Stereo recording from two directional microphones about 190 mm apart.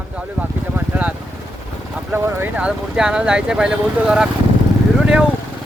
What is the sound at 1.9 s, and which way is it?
Speech, 10° right (ahead or behind).